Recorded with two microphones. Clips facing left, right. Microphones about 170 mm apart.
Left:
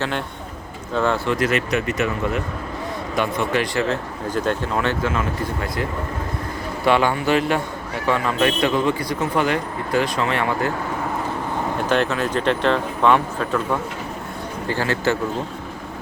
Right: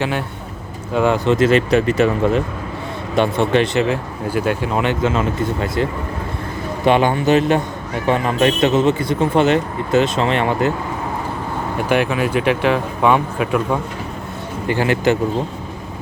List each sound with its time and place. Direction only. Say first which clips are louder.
0.9 s speech: right 5 dB; 15° right (ahead or behind)
3.8 s speech: right 3 dB; 10° right (ahead or behind)
11.9 s speech: right 4 dB; 10° right (ahead or behind)